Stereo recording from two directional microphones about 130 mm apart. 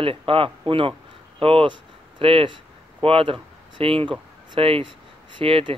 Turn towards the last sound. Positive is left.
turn(degrees=-40)  # may be behind; listen again after turning